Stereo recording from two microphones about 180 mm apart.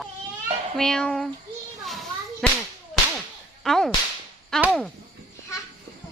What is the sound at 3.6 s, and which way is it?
Speech, centre (ahead or behind).